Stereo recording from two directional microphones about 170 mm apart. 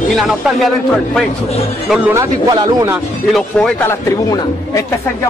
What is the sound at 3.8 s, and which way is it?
Speech, 20° left (ahead or behind).